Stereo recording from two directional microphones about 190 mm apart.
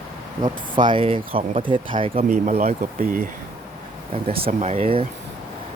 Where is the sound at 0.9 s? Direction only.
25° right (ahead or behind); by 3.2 s 45° right (ahead or behind).